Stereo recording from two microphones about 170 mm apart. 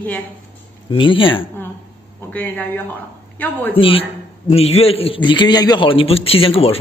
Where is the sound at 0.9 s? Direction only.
30° left (ahead or behind).